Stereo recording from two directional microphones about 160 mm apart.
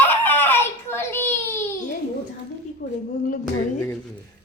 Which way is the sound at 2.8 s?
50° left (ahead or behind).